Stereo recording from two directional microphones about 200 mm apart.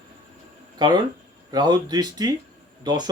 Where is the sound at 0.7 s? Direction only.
20° right (ahead or behind).